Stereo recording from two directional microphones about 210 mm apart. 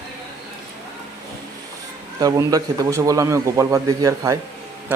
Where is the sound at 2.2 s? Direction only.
15° right (ahead or behind).